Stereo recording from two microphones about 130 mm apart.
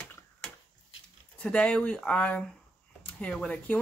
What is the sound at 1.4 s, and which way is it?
Speech, 10° left (ahead or behind).